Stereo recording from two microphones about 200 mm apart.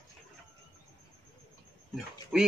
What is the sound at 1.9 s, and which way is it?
Speech, centre (ahead or behind).